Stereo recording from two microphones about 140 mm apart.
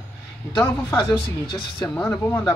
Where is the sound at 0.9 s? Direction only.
35° left (ahead or behind).